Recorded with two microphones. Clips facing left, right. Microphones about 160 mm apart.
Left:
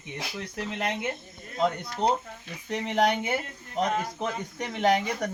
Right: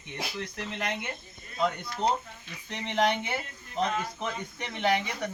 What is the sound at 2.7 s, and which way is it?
Speech, 40° left (ahead or behind).